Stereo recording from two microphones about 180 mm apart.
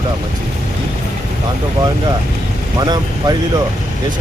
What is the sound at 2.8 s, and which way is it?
Speech, 20° right (ahead or behind).